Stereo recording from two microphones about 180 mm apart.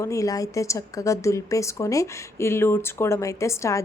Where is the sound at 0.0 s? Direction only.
20° left (ahead or behind).